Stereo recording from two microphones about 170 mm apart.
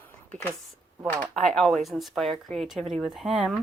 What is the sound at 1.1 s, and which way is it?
A woman's voice, 5° left (ahead or behind).